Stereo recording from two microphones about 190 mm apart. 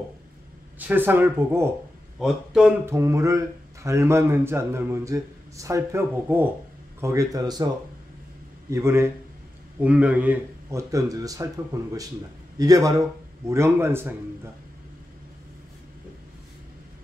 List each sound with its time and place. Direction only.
0.7 s speech: 10° right (ahead or behind)
2.8 s speech: 15° right (ahead or behind)
8.6 s a man's voice: 15° right (ahead or behind)